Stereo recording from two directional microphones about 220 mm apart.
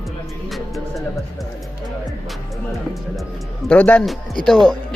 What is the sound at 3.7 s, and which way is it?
Speech, 5° left (ahead or behind).